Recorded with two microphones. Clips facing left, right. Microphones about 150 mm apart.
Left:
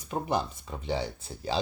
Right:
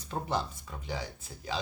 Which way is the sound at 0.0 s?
15° left (ahead or behind).